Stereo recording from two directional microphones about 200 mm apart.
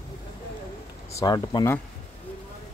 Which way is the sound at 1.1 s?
20° left (ahead or behind).